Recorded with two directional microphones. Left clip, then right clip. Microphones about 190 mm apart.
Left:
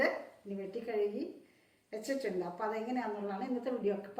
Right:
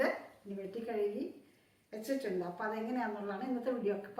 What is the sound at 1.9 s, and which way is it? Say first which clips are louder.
Speech: left 1 dB; centre (ahead or behind).